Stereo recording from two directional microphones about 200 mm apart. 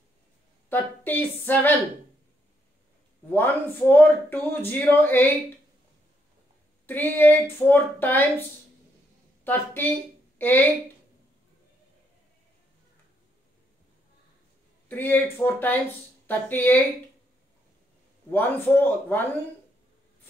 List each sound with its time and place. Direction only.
0.7 s speech: 10° left (ahead or behind)
3.3 s speech: 10° left (ahead or behind)
6.9 s speech: 10° left (ahead or behind)
14.9 s speech: 10° left (ahead or behind)
18.3 s speech: 10° left (ahead or behind)